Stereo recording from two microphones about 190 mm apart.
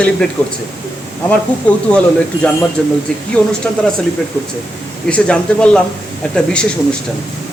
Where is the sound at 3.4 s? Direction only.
10° left (ahead or behind).